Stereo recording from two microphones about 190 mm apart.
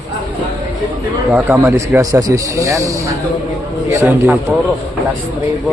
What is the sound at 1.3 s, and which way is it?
Speech, 15° right (ahead or behind).